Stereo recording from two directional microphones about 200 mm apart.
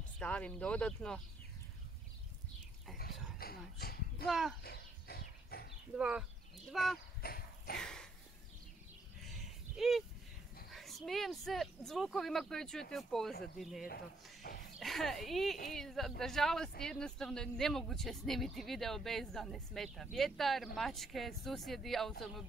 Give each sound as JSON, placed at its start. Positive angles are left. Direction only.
{"t": 0.2, "sound": "speech", "side_deg": 5}
{"t": 3.0, "sound": "dog", "side_deg": 50}
{"t": 4.3, "sound": "speech", "side_deg": 0}
{"t": 4.6, "sound": "dog", "side_deg": 50}
{"t": 5.9, "sound": "speech", "side_deg": -5}
{"t": 7.2, "sound": "dog", "side_deg": 50}
{"t": 7.7, "sound": "a sound", "side_deg": 5}
{"t": 9.2, "sound": "a sound", "side_deg": 0}
{"t": 10.7, "sound": "speech", "side_deg": 0}
{"t": 13.8, "sound": "speech", "side_deg": 50}
{"t": 14.8, "sound": "speech", "side_deg": 0}